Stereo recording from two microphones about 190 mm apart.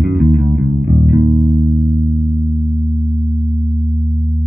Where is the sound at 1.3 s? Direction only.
15° right (ahead or behind).